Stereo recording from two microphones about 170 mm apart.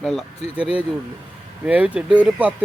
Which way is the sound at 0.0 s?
5° right (ahead or behind).